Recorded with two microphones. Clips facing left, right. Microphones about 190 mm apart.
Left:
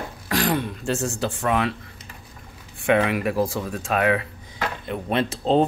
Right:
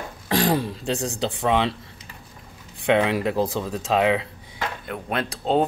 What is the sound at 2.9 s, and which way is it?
Speech, 25° right (ahead or behind).